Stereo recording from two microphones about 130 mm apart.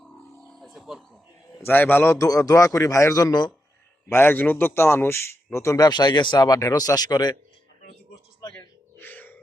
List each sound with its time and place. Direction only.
0.5 s a sound: centre (ahead or behind)
1.6 s a man's voice: 15° left (ahead or behind); by 3.5 s 30° left (ahead or behind)
4.1 s a man's voice: 15° left (ahead or behind); by 7.3 s 30° left (ahead or behind)
8.5 s music: 15° left (ahead or behind)